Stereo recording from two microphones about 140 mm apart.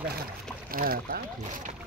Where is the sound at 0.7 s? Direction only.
90° right.